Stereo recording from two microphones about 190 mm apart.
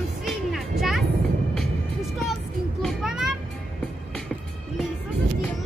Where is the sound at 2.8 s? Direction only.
Centre (ahead or behind).